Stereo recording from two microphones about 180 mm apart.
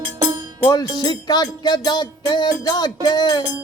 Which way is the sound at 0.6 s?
20° left (ahead or behind).